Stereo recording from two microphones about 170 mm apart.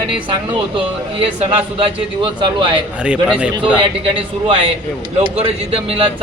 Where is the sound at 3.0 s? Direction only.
5° right (ahead or behind).